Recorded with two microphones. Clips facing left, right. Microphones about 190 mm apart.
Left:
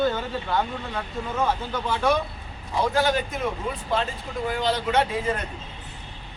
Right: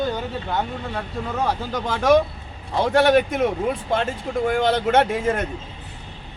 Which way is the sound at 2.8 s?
65° right (ahead or behind).